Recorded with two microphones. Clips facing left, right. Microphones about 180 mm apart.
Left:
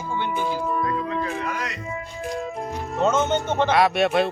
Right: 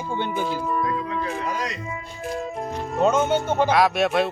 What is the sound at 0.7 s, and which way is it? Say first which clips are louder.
Music: even; centre (ahead or behind).